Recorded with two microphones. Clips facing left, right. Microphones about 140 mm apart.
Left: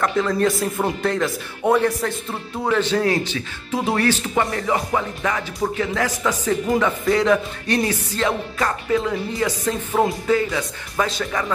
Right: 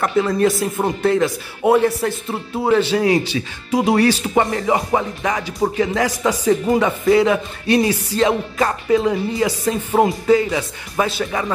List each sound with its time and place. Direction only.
0.0 s speech: 10° right (ahead or behind)